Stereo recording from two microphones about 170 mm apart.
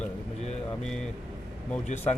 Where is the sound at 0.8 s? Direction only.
5° left (ahead or behind).